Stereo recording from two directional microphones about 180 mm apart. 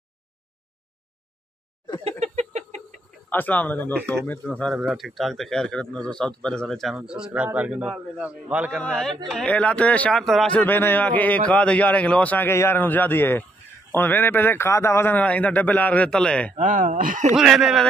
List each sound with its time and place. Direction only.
2.0 s a sound: 40° right (ahead or behind)
3.3 s speech: 10° left (ahead or behind)
4.7 s a man's voice: centre (ahead or behind)
16.5 s speech: 45° right (ahead or behind)
17.3 s a man's voice: centre (ahead or behind)